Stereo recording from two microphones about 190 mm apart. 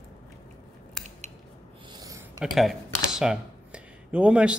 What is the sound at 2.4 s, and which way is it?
Speech, centre (ahead or behind).